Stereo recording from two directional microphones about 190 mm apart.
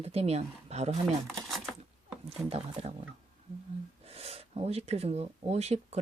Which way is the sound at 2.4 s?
30° right (ahead or behind).